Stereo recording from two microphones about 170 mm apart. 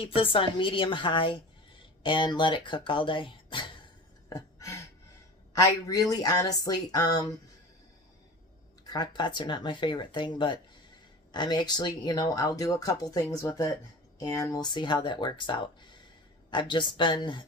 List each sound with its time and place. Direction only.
0.0 s a woman's voice: 30° left (ahead or behind)
4.3 s a sound: 20° left (ahead or behind)
5.5 s speech: 20° left (ahead or behind)
8.8 s speech: 25° left (ahead or behind)